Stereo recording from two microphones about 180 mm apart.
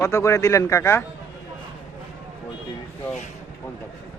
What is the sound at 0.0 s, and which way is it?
Speech, 15° left (ahead or behind).